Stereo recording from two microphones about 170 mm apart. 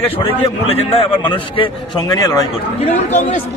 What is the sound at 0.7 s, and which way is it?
A man's voice, 35° left (ahead or behind).